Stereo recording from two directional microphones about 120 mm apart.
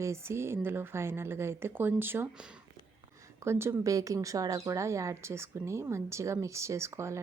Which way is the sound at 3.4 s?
20° right (ahead or behind).